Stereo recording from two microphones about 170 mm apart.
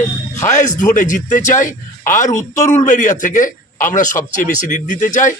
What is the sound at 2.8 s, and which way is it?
A man's voice, 50° left (ahead or behind).